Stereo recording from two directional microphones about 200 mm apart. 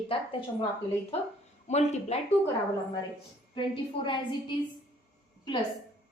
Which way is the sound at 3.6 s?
25° left (ahead or behind).